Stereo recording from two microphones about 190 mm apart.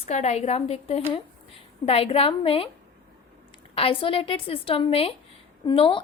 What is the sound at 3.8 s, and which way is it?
A woman's voice, 30° left (ahead or behind).